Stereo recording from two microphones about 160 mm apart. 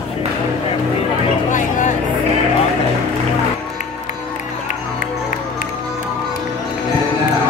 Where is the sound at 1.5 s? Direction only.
50° left (ahead or behind).